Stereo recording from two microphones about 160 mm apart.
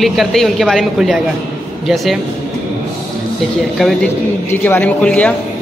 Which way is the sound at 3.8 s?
Centre (ahead or behind).